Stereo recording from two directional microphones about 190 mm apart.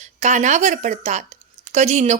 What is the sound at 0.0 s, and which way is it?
Speech, 40° right (ahead or behind).